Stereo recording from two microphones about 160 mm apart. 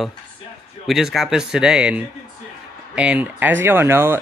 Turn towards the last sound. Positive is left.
turn(degrees=-15)  # may be behind; listen again after turning